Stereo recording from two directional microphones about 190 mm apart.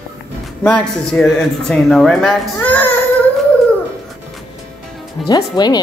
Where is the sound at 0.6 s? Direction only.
5° left (ahead or behind).